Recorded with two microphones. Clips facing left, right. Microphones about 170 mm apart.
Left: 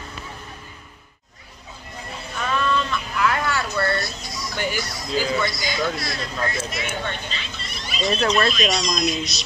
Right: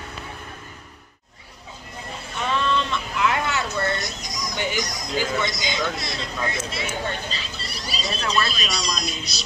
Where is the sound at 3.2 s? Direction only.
20° right (ahead or behind).